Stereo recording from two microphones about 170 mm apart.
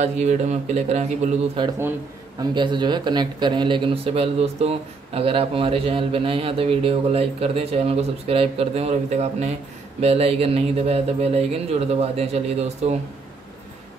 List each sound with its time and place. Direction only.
0.0 s speech: 40° right (ahead or behind)
2.5 s speech: 25° right (ahead or behind)